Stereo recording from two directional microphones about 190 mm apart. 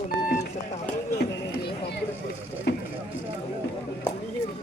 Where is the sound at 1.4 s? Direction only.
60° left (ahead or behind).